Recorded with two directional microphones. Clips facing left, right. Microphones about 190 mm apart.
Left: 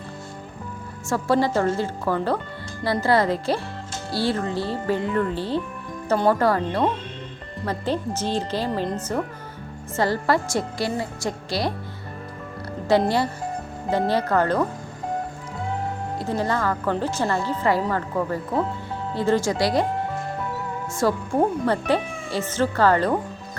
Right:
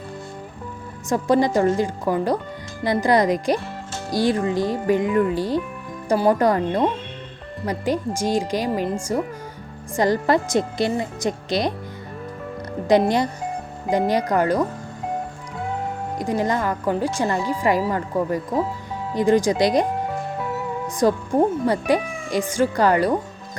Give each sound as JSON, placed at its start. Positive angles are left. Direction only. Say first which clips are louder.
{"t": 1.1, "sound": "speech", "louder": "right 3 dB", "side_deg": -15}
{"t": 13.1, "sound": "speech", "louder": "right 2 dB", "side_deg": -20}
{"t": 16.1, "sound": "speech", "louder": "right 3 dB", "side_deg": -15}
{"t": 21.0, "sound": "speech", "louder": "right 3 dB", "side_deg": -15}